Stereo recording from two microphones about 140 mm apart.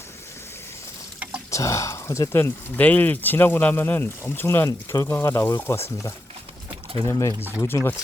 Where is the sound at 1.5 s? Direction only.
20° left (ahead or behind).